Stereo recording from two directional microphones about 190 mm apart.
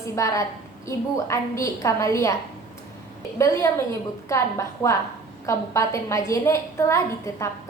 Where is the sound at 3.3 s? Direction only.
15° left (ahead or behind).